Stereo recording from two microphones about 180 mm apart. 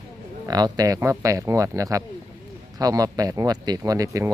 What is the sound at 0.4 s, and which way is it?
Speech, 20° right (ahead or behind).